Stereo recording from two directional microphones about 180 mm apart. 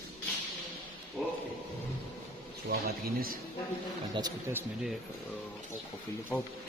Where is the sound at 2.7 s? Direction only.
55° right (ahead or behind).